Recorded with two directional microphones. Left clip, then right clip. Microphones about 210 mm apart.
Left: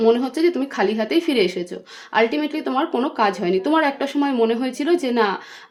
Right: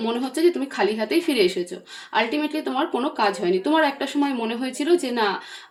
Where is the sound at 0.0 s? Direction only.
45° left (ahead or behind).